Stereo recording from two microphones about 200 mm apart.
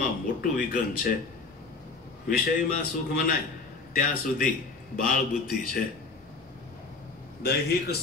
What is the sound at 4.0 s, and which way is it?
Speech, 45° left (ahead or behind).